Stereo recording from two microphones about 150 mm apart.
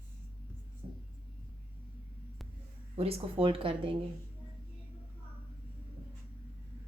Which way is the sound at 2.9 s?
40° right (ahead or behind).